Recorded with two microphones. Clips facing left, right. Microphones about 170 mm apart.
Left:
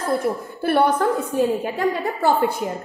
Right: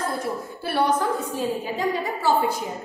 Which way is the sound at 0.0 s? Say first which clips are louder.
Left 5 dB; 55° left (ahead or behind).